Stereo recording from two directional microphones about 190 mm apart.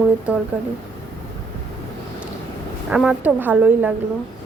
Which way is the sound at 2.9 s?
5° right (ahead or behind).